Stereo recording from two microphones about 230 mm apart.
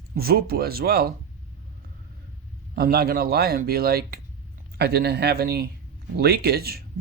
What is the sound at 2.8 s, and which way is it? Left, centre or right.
Speech, right.